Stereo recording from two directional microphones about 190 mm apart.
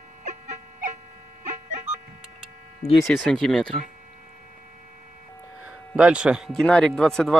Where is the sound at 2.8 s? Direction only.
20° left (ahead or behind).